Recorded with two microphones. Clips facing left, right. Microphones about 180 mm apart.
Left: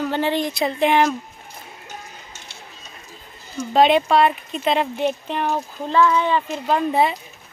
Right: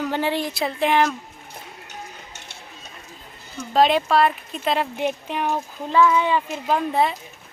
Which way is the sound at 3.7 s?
Centre (ahead or behind).